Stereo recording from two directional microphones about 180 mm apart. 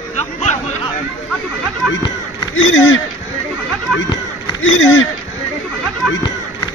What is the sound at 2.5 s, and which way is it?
Speech, 90° left.